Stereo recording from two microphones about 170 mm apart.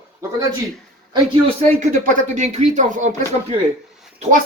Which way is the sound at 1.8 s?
50° right (ahead or behind).